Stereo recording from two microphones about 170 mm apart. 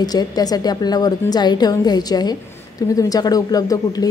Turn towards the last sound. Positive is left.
turn(degrees=20)  # may be behind; listen again after turning